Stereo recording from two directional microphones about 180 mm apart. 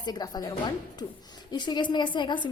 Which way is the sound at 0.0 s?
20° left (ahead or behind).